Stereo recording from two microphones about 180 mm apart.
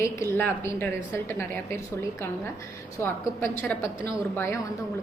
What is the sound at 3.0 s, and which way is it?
A woman's voice, 15° left (ahead or behind).